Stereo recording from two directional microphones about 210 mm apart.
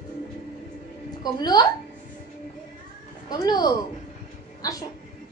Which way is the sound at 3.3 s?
20° left (ahead or behind).